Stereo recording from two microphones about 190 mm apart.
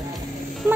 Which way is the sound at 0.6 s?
10° right (ahead or behind).